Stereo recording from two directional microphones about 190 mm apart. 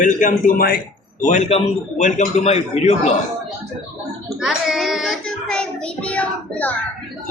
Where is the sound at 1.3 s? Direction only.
35° left (ahead or behind).